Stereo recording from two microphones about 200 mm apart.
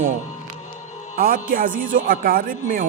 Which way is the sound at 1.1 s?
45° right (ahead or behind).